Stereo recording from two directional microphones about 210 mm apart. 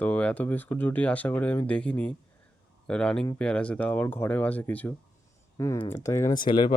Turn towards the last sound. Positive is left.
turn(degrees=20)  # may be behind; listen again after turning